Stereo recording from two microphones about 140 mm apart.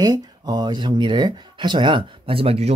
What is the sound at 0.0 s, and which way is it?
Speech, 30° right (ahead or behind).